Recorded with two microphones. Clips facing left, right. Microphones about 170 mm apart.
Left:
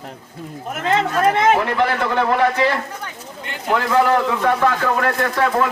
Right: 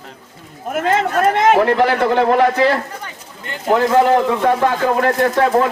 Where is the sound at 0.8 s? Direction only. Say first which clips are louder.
Right 2 dB; 45° right (ahead or behind).